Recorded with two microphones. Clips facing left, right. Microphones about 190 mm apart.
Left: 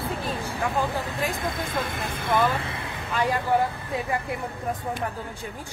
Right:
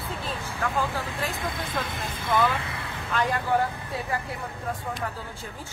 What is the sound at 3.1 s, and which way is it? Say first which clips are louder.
Speech: left 2 dB; 10° left (ahead or behind).